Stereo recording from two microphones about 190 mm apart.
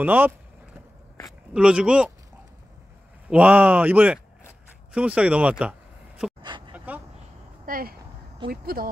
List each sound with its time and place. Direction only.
0.0 s speech: 10° right (ahead or behind)
1.5 s speech: 5° right (ahead or behind)
3.3 s speech: 5° right (ahead or behind)
6.9 s a sound: 10° right (ahead or behind)
7.6 s speech: 50° right (ahead or behind)